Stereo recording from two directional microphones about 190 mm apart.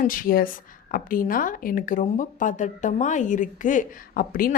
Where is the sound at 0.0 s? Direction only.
45° left (ahead or behind).